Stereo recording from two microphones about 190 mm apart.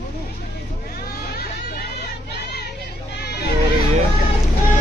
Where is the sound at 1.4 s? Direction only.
60° left (ahead or behind).